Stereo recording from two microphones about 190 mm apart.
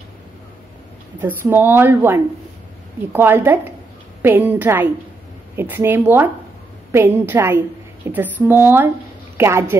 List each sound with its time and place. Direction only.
1.2 s speech: 10° right (ahead or behind)